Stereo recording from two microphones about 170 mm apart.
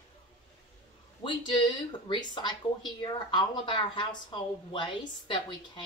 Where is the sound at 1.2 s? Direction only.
25° left (ahead or behind).